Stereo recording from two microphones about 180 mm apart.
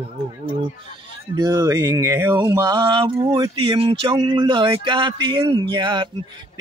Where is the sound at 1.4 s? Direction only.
20° right (ahead or behind).